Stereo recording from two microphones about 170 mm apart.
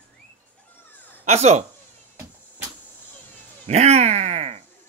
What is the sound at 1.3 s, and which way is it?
Speech, 40° right (ahead or behind).